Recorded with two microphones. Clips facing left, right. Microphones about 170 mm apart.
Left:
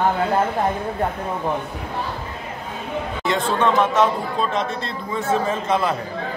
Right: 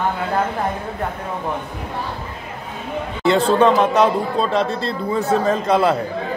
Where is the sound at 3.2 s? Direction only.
35° right (ahead or behind).